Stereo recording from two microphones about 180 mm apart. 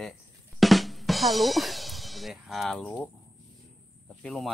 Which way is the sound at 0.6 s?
Centre (ahead or behind).